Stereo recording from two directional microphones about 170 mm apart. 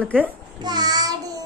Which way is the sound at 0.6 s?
25° right (ahead or behind).